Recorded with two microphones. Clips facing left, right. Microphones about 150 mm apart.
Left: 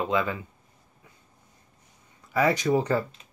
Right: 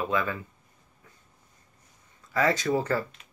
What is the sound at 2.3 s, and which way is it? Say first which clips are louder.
Speech: left 2 dB; 15° left (ahead or behind).